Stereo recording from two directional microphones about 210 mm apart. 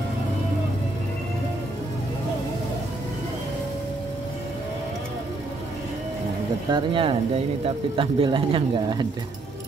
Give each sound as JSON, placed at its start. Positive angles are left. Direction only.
{"t": 6.7, "sound": "speech", "side_deg": -25}